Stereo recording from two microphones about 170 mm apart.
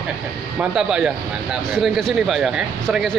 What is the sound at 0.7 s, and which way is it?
Speech, 5° right (ahead or behind).